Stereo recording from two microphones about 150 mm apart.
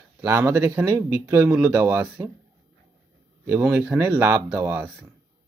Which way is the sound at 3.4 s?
15° right (ahead or behind).